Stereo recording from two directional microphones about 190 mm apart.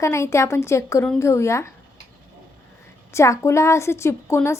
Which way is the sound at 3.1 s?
15° left (ahead or behind).